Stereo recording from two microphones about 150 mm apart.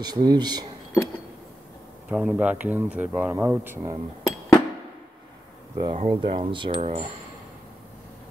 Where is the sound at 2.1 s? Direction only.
10° right (ahead or behind).